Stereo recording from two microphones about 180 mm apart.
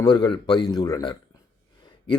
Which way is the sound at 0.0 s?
25° left (ahead or behind).